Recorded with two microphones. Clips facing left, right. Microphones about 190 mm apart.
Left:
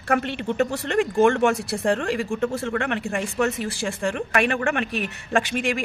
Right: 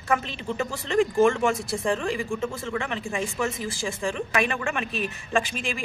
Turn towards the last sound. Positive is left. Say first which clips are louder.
# left 4 dB
turn(degrees=70)  # may be behind; listen again after turning